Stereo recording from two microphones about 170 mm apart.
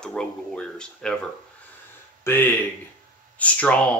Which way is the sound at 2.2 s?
10° left (ahead or behind).